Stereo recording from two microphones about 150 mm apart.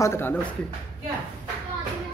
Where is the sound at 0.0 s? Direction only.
15° left (ahead or behind).